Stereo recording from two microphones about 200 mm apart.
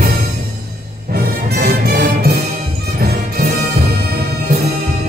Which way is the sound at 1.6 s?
50° right (ahead or behind).